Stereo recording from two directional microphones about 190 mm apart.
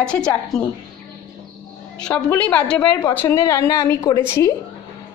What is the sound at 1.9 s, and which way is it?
A woman's voice, 5° left (ahead or behind).